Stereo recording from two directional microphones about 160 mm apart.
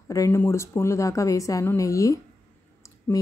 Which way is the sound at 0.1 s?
20° left (ahead or behind).